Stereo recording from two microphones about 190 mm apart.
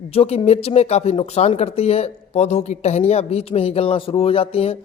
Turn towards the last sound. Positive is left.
turn(degrees=30)  # may be behind; listen again after turning